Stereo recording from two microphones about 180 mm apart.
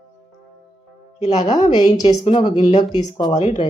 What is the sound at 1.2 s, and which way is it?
Speech, 35° left (ahead or behind).